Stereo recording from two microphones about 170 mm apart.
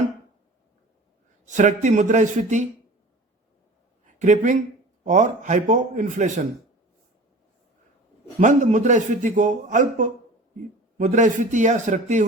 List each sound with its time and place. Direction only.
1.5 s a man's voice: 45° right (ahead or behind)
4.0 s a man's voice: 45° right (ahead or behind)
8.4 s a man's voice: 45° right (ahead or behind)